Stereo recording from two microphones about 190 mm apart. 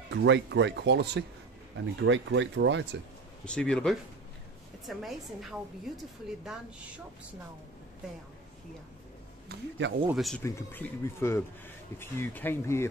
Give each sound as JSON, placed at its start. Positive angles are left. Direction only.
{"t": 0.1, "sound": "speech", "side_deg": -70}
{"t": 2.0, "sound": "speech", "side_deg": -80}
{"t": 3.4, "sound": "a woman's voice", "side_deg": 5}
{"t": 9.5, "sound": "speech", "side_deg": -80}
{"t": 10.0, "sound": "a woman's voice", "side_deg": 0}
{"t": 10.4, "sound": "speech", "side_deg": 10}